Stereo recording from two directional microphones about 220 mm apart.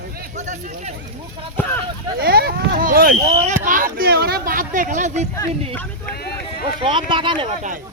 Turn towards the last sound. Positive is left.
turn(degrees=-20)  # may be behind; listen again after turning